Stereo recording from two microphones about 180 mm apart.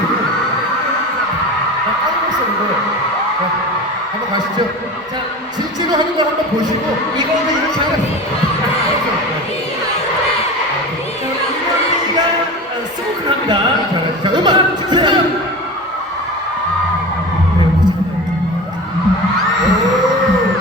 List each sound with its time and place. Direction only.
14.3 s speech: 25° right (ahead or behind)